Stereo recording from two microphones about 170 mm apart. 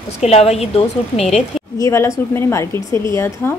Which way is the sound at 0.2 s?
40° left (ahead or behind).